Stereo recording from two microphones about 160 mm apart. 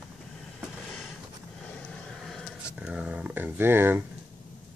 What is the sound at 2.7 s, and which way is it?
Speech, 5° right (ahead or behind).